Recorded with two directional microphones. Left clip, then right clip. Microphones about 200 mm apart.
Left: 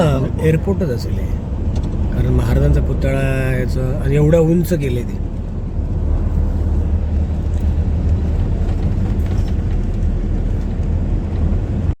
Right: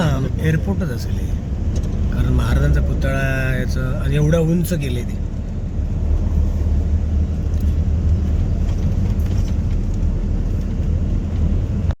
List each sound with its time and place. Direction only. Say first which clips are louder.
0.0 s a man's voice: left 6 dB; 20° left (ahead or behind)
2.4 s speech: left 4 dB; 20° left (ahead or behind)